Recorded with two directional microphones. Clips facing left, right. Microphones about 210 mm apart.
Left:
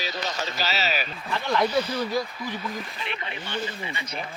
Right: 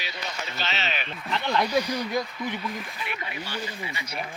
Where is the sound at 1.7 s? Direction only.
15° right (ahead or behind).